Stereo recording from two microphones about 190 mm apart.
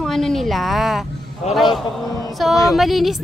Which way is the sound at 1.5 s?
35° left (ahead or behind).